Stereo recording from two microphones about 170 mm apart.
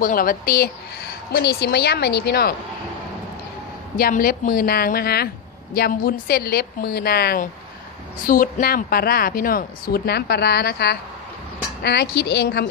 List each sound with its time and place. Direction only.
0.0 s a woman's voice: 55° left (ahead or behind)
3.9 s a woman's voice: 55° left (ahead or behind)
8.3 s a woman's voice: 55° left (ahead or behind)